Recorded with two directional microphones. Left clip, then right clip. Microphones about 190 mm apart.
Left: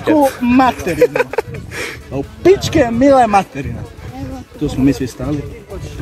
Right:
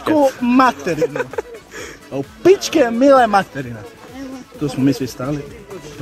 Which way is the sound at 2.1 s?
Centre (ahead or behind).